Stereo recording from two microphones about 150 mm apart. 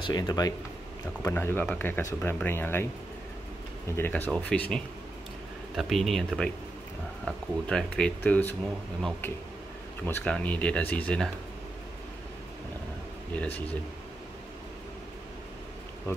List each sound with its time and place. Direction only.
0.0 s speech: 25° left (ahead or behind)
3.9 s speech: 15° left (ahead or behind)
10.0 s speech: 10° left (ahead or behind)